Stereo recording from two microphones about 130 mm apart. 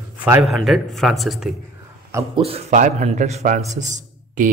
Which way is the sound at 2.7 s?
70° right (ahead or behind).